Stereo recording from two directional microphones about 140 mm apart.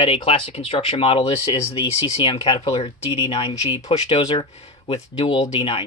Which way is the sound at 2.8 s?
40° left (ahead or behind).